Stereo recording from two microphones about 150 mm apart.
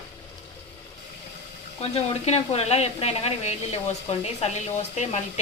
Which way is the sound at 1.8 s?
40° left (ahead or behind).